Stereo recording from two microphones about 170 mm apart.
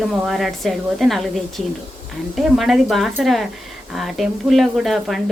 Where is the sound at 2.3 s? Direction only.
Centre (ahead or behind).